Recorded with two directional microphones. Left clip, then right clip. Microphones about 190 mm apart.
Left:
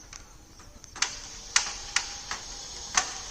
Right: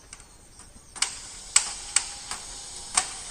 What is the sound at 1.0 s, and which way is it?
Tick-tock, centre (ahead or behind).